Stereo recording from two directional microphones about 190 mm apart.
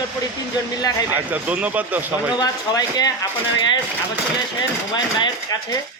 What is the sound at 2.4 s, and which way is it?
Speech, 20° left (ahead or behind).